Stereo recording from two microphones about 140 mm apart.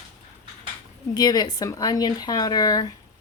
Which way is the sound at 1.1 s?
30° left (ahead or behind).